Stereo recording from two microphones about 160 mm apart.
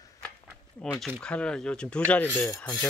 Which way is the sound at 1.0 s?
5° left (ahead or behind).